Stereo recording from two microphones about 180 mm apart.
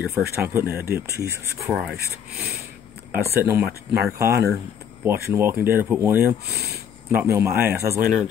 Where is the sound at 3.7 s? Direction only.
65° right (ahead or behind).